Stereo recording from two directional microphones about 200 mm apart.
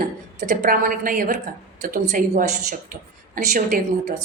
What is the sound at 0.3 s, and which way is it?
A woman's voice, 45° right (ahead or behind).